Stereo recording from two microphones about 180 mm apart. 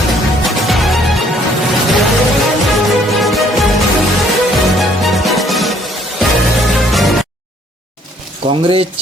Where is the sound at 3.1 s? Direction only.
Centre (ahead or behind).